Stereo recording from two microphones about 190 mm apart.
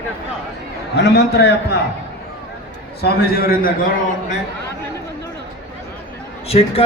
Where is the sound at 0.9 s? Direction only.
60° left (ahead or behind).